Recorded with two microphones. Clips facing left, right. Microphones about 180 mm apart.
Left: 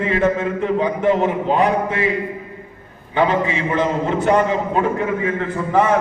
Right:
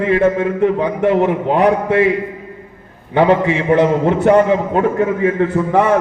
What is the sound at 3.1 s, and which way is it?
A man's voice, 60° right (ahead or behind).